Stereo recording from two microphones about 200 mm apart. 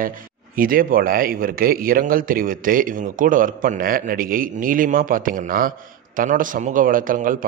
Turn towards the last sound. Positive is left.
turn(degrees=-45)  # may be behind; listen again after turning